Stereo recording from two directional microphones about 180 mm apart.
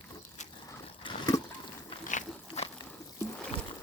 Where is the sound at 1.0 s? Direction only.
25° left (ahead or behind).